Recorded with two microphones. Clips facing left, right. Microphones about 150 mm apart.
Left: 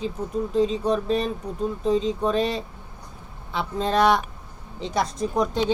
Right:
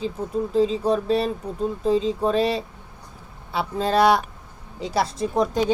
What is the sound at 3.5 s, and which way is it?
Speech, 35° right (ahead or behind).